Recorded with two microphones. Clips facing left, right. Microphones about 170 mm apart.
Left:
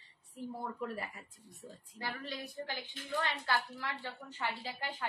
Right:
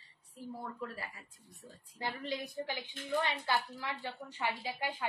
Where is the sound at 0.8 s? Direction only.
25° left (ahead or behind).